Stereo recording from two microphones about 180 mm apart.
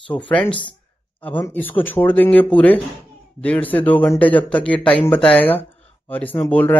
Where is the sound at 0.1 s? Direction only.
5° left (ahead or behind).